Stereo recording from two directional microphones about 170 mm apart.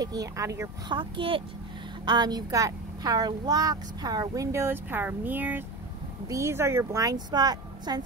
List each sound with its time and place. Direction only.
0.0 s speech: 20° right (ahead or behind)